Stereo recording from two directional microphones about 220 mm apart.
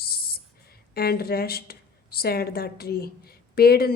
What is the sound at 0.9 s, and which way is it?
Speech, 45° left (ahead or behind).